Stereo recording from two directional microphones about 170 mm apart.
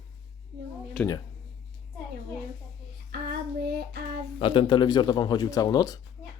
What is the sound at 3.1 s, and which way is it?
Child singing, 70° right (ahead or behind).